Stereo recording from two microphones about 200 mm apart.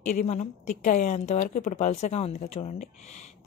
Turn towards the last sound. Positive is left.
turn(degrees=35)  # may be behind; listen again after turning